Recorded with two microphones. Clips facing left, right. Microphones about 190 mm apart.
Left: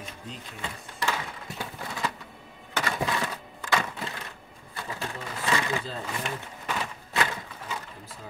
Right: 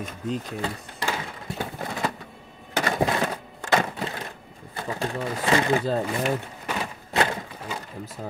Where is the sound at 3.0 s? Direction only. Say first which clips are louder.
Right 6 dB; 45° right (ahead or behind).